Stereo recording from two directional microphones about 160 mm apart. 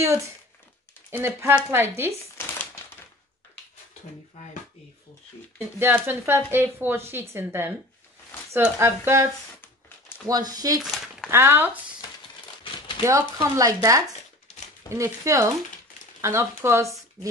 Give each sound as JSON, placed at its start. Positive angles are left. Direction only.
{"t": 1.1, "sound": "speech", "side_deg": -15}
{"t": 2.3, "sound": "crumpling", "side_deg": 15}
{"t": 5.8, "sound": "speech", "side_deg": -15}
{"t": 10.8, "sound": "a sound", "side_deg": 0}
{"t": 11.2, "sound": "speech", "side_deg": -15}
{"t": 13.0, "sound": "speech", "side_deg": -20}